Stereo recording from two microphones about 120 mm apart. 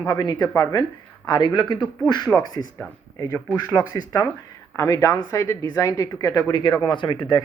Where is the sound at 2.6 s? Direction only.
25° left (ahead or behind).